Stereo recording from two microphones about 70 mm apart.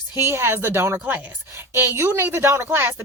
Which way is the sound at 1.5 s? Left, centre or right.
Right.